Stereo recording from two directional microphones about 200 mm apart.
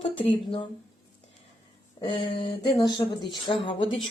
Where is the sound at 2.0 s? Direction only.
20° left (ahead or behind).